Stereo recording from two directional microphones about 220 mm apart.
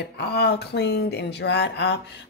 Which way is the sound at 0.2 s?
50° left (ahead or behind).